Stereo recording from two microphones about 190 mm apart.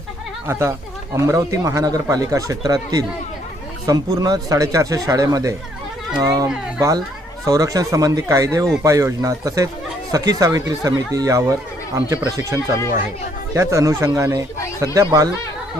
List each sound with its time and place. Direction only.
1.1 s a child's voice: 15° right (ahead or behind)